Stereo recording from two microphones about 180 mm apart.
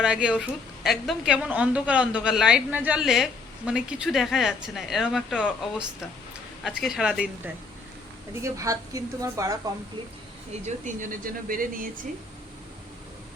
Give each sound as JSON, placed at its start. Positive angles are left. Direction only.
{"t": 0.0, "sound": "a woman's voice", "side_deg": -5}
{"t": 8.4, "sound": "a woman's voice", "side_deg": -15}
{"t": 10.7, "sound": "speech", "side_deg": -45}